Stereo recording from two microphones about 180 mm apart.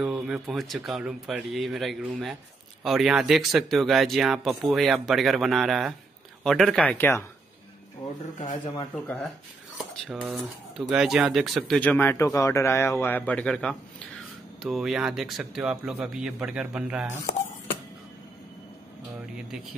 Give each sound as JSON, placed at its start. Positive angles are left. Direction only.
{"t": 0.0, "sound": "speech", "side_deg": 0}
{"t": 8.4, "sound": "speech", "side_deg": 40}
{"t": 9.0, "sound": "speech", "side_deg": 5}